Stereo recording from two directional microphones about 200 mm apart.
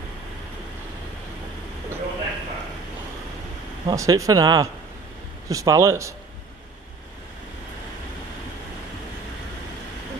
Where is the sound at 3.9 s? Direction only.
15° right (ahead or behind).